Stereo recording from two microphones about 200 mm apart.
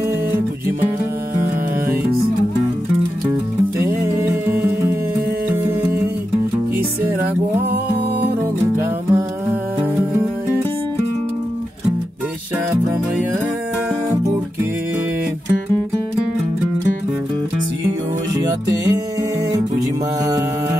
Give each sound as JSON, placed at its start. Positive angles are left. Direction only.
{"t": 3.8, "sound": "music", "side_deg": -15}
{"t": 8.4, "sound": "music", "side_deg": -10}
{"t": 18.3, "sound": "music", "side_deg": -15}